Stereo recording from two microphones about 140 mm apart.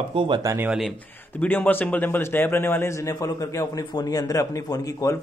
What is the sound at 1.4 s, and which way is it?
Speech, 10° left (ahead or behind).